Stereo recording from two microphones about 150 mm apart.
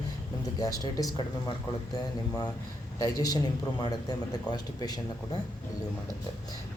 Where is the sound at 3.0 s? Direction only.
25° left (ahead or behind).